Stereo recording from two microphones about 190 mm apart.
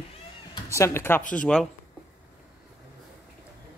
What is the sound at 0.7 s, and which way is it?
Speech, 15° left (ahead or behind).